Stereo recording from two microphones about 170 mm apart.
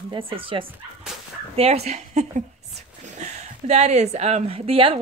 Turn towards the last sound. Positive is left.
turn(degrees=-35)  # may be behind; listen again after turning